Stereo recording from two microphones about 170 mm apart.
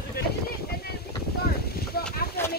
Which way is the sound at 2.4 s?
15° left (ahead or behind).